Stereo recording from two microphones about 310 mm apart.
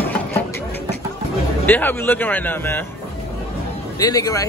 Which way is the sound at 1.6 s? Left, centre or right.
Centre.